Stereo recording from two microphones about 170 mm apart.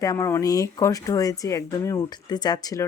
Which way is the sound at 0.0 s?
20° left (ahead or behind).